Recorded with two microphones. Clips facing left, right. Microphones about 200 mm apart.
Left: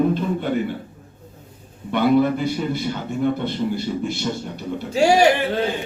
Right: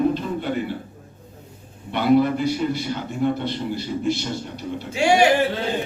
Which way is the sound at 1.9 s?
50° left (ahead or behind).